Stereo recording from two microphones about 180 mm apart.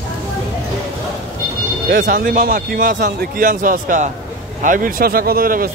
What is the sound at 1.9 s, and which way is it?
Speech, 50° right (ahead or behind).